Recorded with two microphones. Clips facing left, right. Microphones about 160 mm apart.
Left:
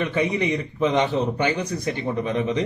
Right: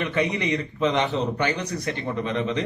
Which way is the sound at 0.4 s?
15° left (ahead or behind).